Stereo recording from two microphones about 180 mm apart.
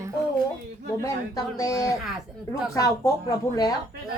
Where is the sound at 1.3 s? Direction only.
20° left (ahead or behind).